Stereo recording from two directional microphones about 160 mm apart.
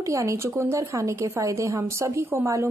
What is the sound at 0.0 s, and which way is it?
A woman's voice, 20° right (ahead or behind).